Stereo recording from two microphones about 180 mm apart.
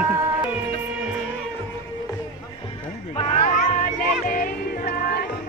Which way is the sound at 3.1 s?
35° left (ahead or behind).